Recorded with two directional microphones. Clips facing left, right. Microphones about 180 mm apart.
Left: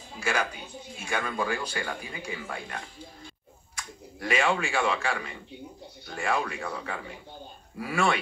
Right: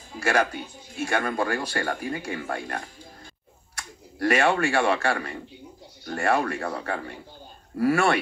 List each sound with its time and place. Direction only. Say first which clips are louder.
1.0 s speech: right 5 dB; 55° right (ahead or behind)
3.7 s a man's voice: right 1 dB; 65° right (ahead or behind)